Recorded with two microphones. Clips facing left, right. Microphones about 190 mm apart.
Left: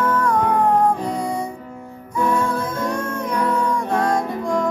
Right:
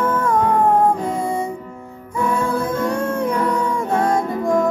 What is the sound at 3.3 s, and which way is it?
Music, 25° right (ahead or behind).